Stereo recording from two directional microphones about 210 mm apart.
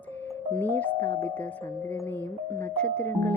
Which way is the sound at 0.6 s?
10° left (ahead or behind).